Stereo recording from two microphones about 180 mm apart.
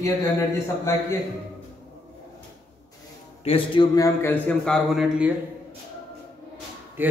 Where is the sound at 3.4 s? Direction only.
30° left (ahead or behind).